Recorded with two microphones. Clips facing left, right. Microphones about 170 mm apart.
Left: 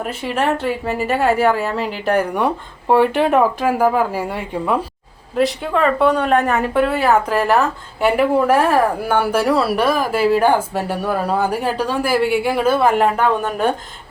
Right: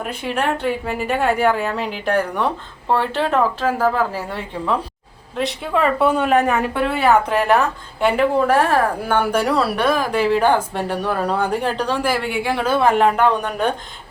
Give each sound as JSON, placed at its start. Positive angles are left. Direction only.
{"t": 0.0, "sound": "a woman's voice", "side_deg": 5}
{"t": 5.4, "sound": "a woman's voice", "side_deg": 0}